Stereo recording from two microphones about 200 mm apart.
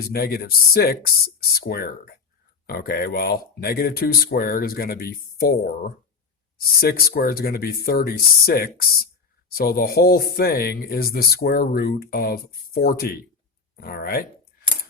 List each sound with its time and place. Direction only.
0.0 s speech: 50° left (ahead or behind)